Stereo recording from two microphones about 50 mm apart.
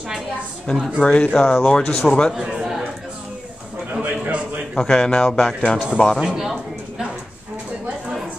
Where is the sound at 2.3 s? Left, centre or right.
Centre.